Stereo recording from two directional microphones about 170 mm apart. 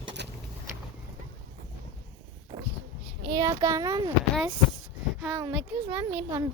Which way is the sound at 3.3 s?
20° right (ahead or behind).